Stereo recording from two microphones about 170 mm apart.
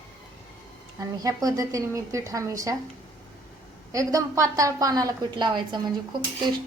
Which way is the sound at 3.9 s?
20° right (ahead or behind).